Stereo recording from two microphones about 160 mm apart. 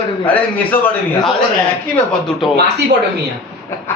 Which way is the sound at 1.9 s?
5° left (ahead or behind).